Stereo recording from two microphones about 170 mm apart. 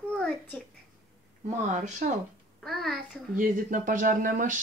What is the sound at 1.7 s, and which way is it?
Speech, 45° right (ahead or behind).